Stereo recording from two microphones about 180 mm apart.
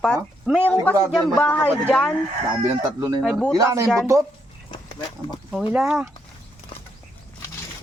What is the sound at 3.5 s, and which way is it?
Speech, 20° right (ahead or behind).